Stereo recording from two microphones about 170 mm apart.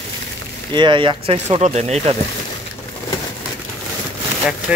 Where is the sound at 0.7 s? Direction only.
25° right (ahead or behind).